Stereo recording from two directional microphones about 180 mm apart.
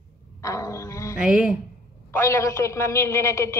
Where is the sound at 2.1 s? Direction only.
15° left (ahead or behind).